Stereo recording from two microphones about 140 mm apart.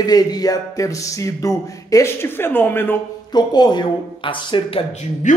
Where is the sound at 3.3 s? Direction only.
30° left (ahead or behind).